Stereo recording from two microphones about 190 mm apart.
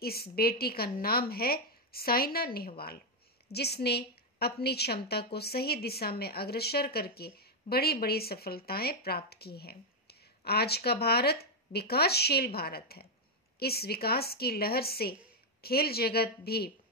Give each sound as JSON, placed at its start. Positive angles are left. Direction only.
{"t": 0.0, "sound": "a woman's voice", "side_deg": 55}